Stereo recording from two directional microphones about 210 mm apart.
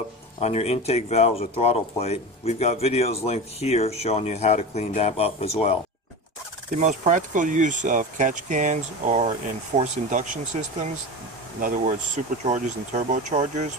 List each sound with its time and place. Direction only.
0.4 s speech: 30° left (ahead or behind)
6.8 s speech: 35° right (ahead or behind)